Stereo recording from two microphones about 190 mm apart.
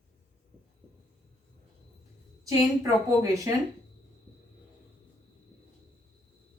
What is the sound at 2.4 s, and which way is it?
Speech, 15° right (ahead or behind).